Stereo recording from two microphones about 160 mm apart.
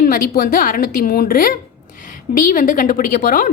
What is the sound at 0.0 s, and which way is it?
A woman's voice, 60° left (ahead or behind).